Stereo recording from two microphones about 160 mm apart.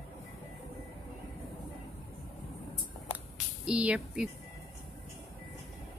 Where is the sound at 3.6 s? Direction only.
5° right (ahead or behind).